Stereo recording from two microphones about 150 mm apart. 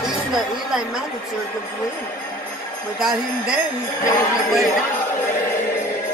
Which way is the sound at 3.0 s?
5° right (ahead or behind).